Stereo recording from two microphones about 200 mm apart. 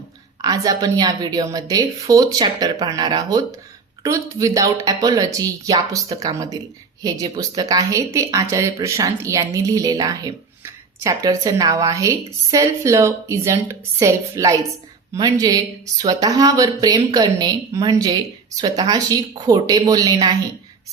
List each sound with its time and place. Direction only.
0.4 s a woman's voice: 15° right (ahead or behind)